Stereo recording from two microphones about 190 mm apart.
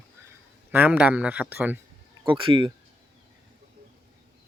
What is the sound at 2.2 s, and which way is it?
Speech, 25° right (ahead or behind).